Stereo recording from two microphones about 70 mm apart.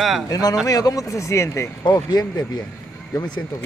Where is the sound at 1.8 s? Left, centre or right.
Left.